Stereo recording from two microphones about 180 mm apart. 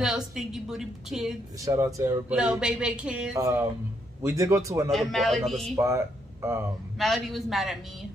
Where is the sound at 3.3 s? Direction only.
20° right (ahead or behind).